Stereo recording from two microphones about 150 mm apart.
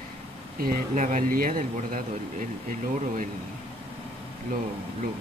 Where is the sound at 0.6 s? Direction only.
60° right (ahead or behind).